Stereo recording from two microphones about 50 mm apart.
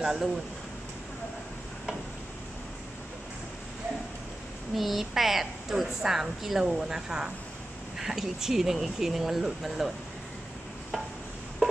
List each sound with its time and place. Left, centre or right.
0.0 s speech: centre
4.7 s a woman's voice: centre